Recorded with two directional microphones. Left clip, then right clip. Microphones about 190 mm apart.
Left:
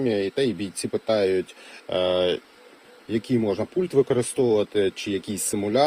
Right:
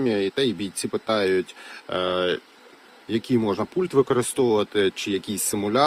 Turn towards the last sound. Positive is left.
turn(degrees=-15)  # may be behind; listen again after turning